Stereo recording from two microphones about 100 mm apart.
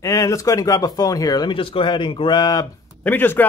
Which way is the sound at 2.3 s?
40° left (ahead or behind).